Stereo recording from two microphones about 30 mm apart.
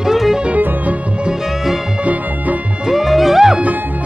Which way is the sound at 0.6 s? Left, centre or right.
Right.